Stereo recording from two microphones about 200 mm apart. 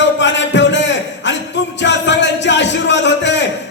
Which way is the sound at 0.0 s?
65° left (ahead or behind).